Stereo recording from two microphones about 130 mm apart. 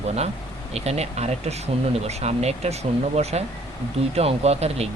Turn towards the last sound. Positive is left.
turn(degrees=-55)  # may be behind; listen again after turning